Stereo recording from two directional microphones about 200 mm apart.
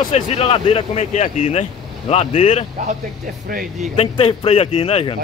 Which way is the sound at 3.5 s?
45° right (ahead or behind).